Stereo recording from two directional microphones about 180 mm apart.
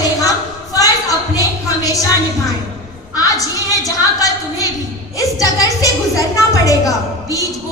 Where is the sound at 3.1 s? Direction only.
20° left (ahead or behind).